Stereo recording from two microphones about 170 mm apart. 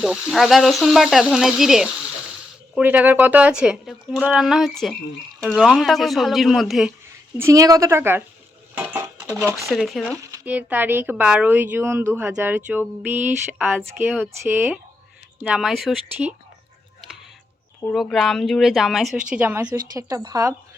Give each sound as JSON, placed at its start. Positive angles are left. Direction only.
{"t": 0.0, "sound": "speech", "side_deg": 0}
{"t": 7.3, "sound": "speech", "side_deg": -20}
{"t": 8.7, "sound": "dishes", "side_deg": -10}
{"t": 9.7, "sound": "speech", "side_deg": 0}
{"t": 10.3, "sound": "speech", "side_deg": -10}
{"t": 17.9, "sound": "speech", "side_deg": 0}